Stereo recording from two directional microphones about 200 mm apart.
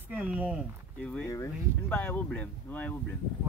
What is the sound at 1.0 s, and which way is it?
Speech, 5° left (ahead or behind).